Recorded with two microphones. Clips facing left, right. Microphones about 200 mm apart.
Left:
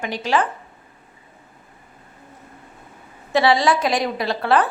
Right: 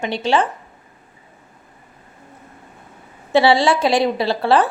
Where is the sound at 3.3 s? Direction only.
30° right (ahead or behind).